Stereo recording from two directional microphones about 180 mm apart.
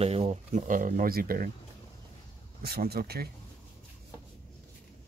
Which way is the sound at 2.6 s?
60° right (ahead or behind).